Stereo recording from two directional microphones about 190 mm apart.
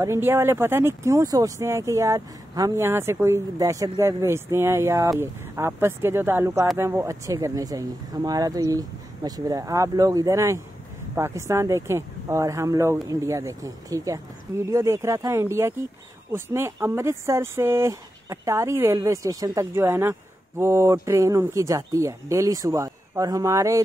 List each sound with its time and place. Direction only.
0.0 s speech: 15° right (ahead or behind)